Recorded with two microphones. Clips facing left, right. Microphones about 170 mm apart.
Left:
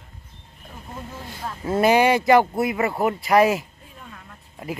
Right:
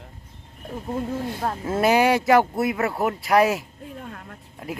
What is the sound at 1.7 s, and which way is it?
Speech, centre (ahead or behind).